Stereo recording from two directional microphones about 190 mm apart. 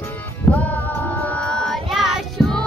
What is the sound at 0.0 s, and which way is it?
Music, 10° left (ahead or behind).